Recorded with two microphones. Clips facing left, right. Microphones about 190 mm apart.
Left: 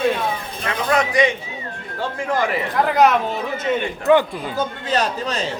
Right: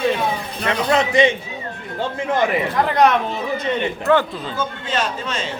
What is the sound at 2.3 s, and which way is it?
Speech, 20° right (ahead or behind).